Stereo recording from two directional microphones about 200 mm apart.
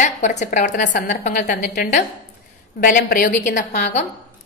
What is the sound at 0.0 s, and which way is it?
A woman's voice, 35° left (ahead or behind).